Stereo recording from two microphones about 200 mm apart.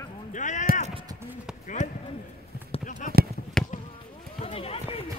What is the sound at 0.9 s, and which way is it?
Clip-clop, 25° right (ahead or behind).